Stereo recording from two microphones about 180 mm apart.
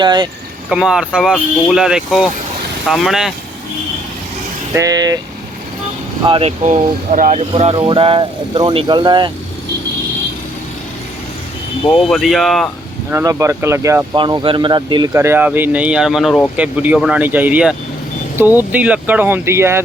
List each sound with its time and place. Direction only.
0.0 s speech: 25° right (ahead or behind)
0.7 s speech: 5° right (ahead or behind)
4.7 s speech: 20° right (ahead or behind)
6.2 s speech: 30° right (ahead or behind)
6.7 s speech: 45° right (ahead or behind); by 9.3 s 25° right (ahead or behind)
11.9 s speech: 5° left (ahead or behind)
13.1 s speech: 15° right (ahead or behind)
14.2 s speech: 25° right (ahead or behind)
15.1 s speech: 15° right (ahead or behind); by 16.5 s 5° left (ahead or behind)
16.6 s speech: 5° right (ahead or behind)